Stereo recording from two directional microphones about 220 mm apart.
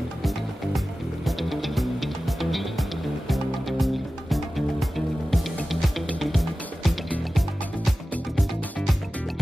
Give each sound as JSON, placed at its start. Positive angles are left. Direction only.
{"t": 0.2, "sound": "music", "side_deg": 0}